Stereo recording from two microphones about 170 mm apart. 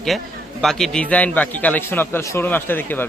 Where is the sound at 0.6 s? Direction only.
Centre (ahead or behind).